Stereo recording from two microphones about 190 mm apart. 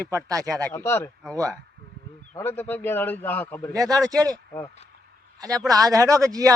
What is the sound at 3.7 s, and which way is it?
Speech, 20° right (ahead or behind).